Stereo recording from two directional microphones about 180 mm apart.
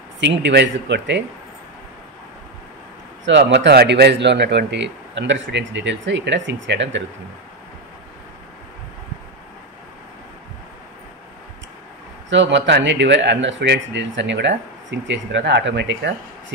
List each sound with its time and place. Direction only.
0.2 s speech: 85° right
3.3 s speech: 90° right
12.3 s speech: 90° right